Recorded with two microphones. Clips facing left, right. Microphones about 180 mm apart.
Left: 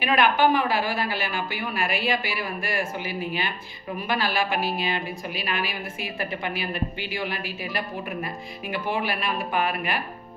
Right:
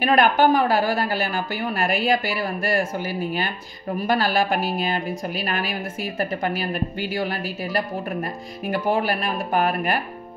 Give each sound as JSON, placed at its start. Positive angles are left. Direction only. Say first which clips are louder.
{"t": 0.0, "sound": "a woman's voice", "louder": "right 3 dB", "side_deg": -45}